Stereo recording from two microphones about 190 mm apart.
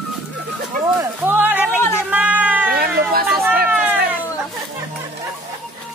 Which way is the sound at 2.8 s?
50° right (ahead or behind).